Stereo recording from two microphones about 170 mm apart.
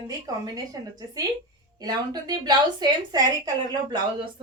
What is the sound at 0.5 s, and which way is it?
A woman's voice, 20° right (ahead or behind).